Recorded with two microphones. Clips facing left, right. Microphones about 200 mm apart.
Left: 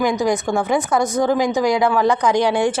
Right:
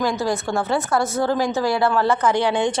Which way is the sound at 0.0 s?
15° left (ahead or behind).